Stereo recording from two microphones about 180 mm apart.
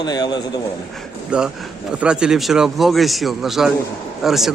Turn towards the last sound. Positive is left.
turn(degrees=0)  # may be behind; listen again after turning